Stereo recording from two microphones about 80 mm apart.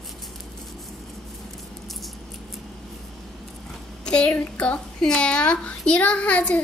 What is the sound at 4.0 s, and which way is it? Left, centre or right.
A woman's voice, centre.